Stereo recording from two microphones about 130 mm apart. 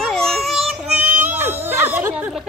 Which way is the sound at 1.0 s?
15° right (ahead or behind).